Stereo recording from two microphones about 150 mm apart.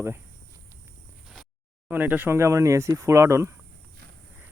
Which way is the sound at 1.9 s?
10° right (ahead or behind).